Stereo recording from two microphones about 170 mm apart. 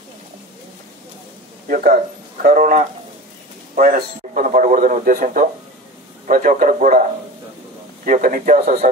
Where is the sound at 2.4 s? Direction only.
55° right (ahead or behind).